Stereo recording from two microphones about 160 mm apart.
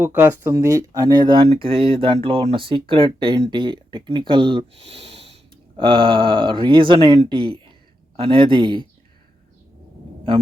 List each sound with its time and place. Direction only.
0.0 s speech: 15° right (ahead or behind)
4.9 s snort: 90° right
5.7 s speech: 30° right (ahead or behind)